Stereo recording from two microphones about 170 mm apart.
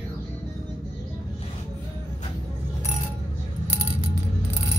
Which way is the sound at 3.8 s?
30° right (ahead or behind).